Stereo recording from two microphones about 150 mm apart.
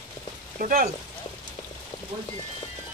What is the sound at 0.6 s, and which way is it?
Speech, 70° right (ahead or behind).